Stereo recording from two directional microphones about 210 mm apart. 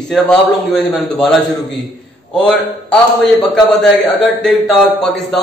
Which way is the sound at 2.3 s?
Centre (ahead or behind).